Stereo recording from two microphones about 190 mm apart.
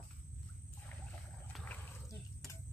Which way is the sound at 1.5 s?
5° left (ahead or behind).